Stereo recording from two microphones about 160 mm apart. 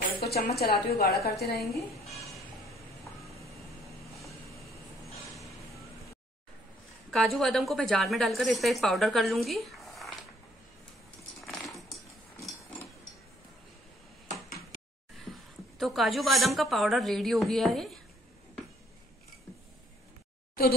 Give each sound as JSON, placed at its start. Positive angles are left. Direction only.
{"t": 0.2, "sound": "a woman's voice", "side_deg": 80}
{"t": 1.6, "sound": "a woman's voice", "side_deg": 0}
{"t": 7.1, "sound": "a woman's voice", "side_deg": 0}
{"t": 11.4, "sound": "a sound", "side_deg": 0}
{"t": 15.8, "sound": "a woman's voice", "side_deg": 0}